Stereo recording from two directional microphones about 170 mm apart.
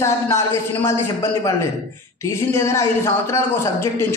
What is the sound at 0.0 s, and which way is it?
A man's voice, 15° left (ahead or behind).